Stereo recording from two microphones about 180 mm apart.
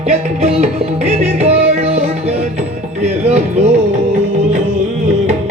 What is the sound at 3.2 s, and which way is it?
Music, 35° right (ahead or behind).